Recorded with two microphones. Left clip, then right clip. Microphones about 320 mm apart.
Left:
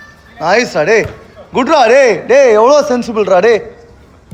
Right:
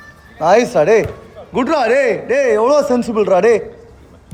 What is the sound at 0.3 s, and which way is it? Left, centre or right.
Speech, centre.